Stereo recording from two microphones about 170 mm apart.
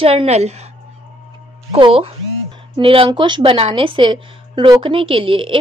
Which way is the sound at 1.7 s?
35° right (ahead or behind).